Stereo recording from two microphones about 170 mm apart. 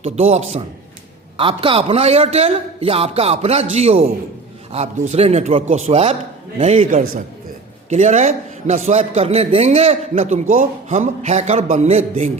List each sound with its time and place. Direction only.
0.0 s a man's voice: 40° right (ahead or behind)
7.9 s a man's voice: 45° right (ahead or behind)